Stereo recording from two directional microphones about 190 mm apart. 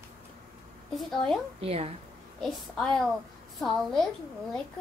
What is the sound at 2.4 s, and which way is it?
A child's voice, 5° left (ahead or behind).